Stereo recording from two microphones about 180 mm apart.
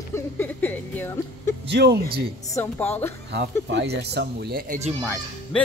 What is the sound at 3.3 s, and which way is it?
Speech, 70° right (ahead or behind).